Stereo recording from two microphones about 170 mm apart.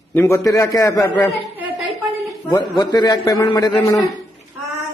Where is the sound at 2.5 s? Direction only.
25° left (ahead or behind).